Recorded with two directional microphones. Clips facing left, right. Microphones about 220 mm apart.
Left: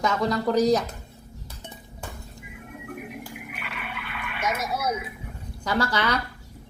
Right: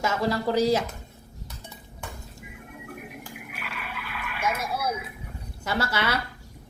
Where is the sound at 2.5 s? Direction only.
Centre (ahead or behind).